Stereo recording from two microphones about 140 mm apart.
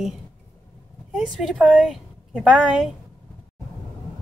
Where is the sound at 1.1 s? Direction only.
Centre (ahead or behind).